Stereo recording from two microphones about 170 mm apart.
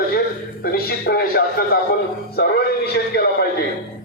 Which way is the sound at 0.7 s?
65° left (ahead or behind).